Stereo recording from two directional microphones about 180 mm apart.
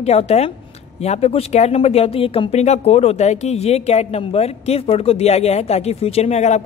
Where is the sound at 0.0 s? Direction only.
35° left (ahead or behind).